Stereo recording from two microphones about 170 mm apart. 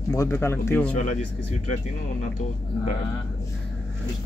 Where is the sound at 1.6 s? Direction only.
45° left (ahead or behind).